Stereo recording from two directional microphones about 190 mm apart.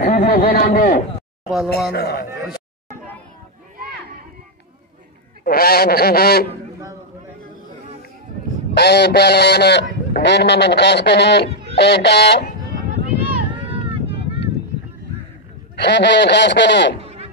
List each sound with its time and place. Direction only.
0.0 s a man's voice: 45° left (ahead or behind)
1.5 s speech: centre (ahead or behind)
1.9 s speech: 55° left (ahead or behind)
5.4 s speech: 55° left (ahead or behind)
8.7 s speech: 60° left (ahead or behind)
13.7 s vehicle: 30° right (ahead or behind)
15.7 s speech: 65° left (ahead or behind)
17.0 s music: 30° right (ahead or behind)